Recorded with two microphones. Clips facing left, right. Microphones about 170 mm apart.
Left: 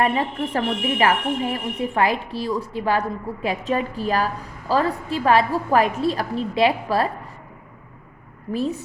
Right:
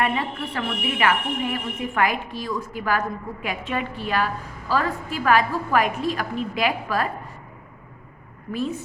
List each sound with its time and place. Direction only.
0.0 s a woman's voice: 35° left (ahead or behind)
8.5 s a woman's voice: 35° left (ahead or behind)